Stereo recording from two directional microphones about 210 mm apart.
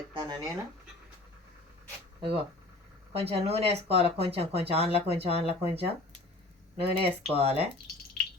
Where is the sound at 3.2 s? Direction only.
30° right (ahead or behind).